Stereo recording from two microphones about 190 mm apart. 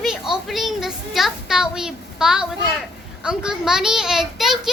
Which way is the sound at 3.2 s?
5° right (ahead or behind).